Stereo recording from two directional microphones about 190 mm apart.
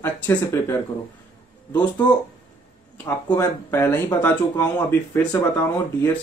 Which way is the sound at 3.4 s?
15° left (ahead or behind).